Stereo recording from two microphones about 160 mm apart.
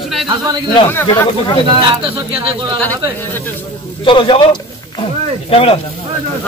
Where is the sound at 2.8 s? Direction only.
10° left (ahead or behind).